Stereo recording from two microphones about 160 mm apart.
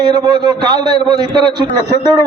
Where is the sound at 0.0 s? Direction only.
25° right (ahead or behind).